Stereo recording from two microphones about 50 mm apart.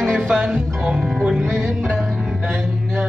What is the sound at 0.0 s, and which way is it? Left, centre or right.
Music, centre.